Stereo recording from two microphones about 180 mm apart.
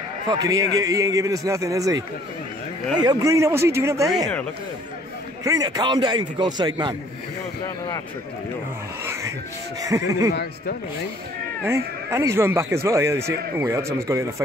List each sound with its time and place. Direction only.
0.3 s a man's voice: 20° right (ahead or behind)
5.4 s a man's voice: 20° right (ahead or behind)
9.8 s a man's voice: 20° right (ahead or behind)
10.3 s speech: 60° left (ahead or behind)
11.6 s a man's voice: 15° right (ahead or behind)